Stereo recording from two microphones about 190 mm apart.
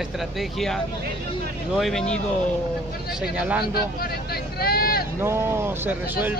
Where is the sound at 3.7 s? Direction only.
55° left (ahead or behind).